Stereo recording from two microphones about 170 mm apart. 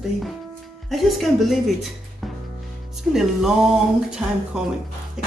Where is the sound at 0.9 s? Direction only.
Centre (ahead or behind).